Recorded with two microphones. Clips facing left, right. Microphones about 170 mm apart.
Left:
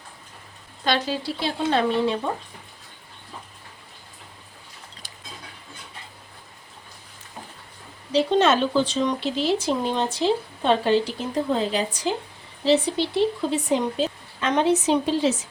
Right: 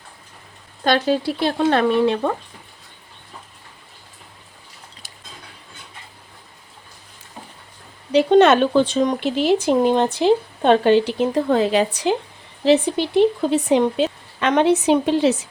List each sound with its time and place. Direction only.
0.9 s speech: 55° right (ahead or behind)
8.1 s speech: 60° right (ahead or behind)